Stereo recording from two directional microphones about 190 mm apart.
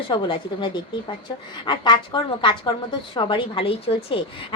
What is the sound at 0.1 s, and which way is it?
A woman's voice, 25° left (ahead or behind).